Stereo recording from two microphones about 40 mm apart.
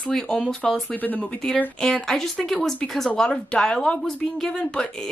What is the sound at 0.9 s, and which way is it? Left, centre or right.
Speech, left.